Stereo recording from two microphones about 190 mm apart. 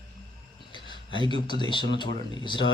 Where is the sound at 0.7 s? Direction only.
25° left (ahead or behind).